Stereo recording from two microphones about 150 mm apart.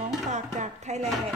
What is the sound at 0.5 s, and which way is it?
Music, 50° right (ahead or behind).